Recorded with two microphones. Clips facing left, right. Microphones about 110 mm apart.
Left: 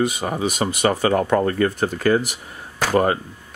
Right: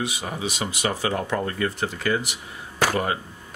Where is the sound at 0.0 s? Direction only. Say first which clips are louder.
Left 7 dB; 45° left (ahead or behind).